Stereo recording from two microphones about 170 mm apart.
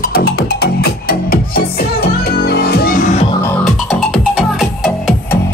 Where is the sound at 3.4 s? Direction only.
5° left (ahead or behind).